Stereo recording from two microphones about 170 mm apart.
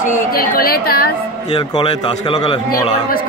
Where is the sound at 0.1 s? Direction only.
60° left (ahead or behind).